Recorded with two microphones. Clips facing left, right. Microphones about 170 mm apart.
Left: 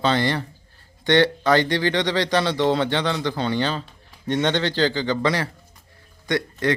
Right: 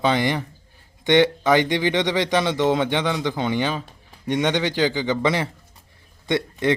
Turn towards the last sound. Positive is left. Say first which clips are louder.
# right 1 dB
turn(degrees=-20)  # may be behind; listen again after turning